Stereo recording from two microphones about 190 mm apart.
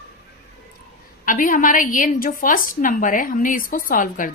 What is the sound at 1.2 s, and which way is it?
A woman's voice, 45° left (ahead or behind).